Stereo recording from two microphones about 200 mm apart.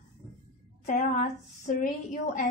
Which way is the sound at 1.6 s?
40° left (ahead or behind).